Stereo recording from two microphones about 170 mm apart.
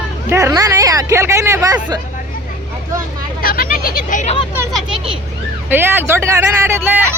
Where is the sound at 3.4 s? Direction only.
60° left (ahead or behind).